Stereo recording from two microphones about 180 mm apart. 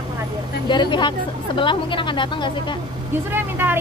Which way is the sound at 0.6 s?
25° left (ahead or behind).